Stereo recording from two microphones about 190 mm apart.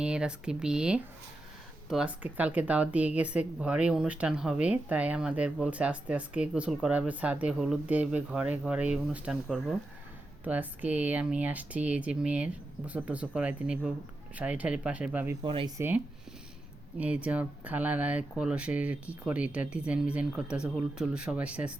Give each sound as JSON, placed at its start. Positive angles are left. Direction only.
{"t": 0.0, "sound": "speech", "side_deg": -5}
{"t": 15.4, "sound": "speech", "side_deg": -25}
{"t": 17.0, "sound": "speech", "side_deg": -5}